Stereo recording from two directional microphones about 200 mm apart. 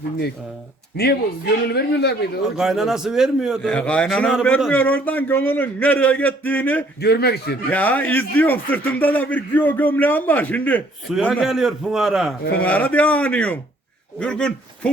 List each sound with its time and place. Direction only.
0.9 s a man's voice: 55° left (ahead or behind)
2.6 s a man's voice: centre (ahead or behind)
7.0 s a man's voice: 55° left (ahead or behind)
7.7 s a man's voice: 10° left (ahead or behind)
11.1 s a man's voice: 5° right (ahead or behind)